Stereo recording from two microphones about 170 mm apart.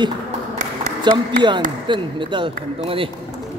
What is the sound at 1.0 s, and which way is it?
Speech, 25° right (ahead or behind).